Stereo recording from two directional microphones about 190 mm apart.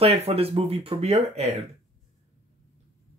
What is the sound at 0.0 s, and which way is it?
Speech, 30° right (ahead or behind).